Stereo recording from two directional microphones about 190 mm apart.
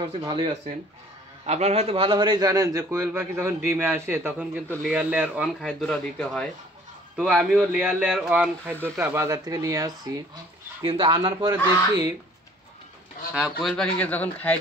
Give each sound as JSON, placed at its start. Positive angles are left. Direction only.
{"t": 0.0, "sound": "speech", "side_deg": -20}
{"t": 1.4, "sound": "a man's voice", "side_deg": -35}
{"t": 13.3, "sound": "speech", "side_deg": 0}